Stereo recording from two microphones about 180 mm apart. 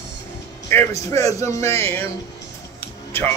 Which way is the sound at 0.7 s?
15° left (ahead or behind).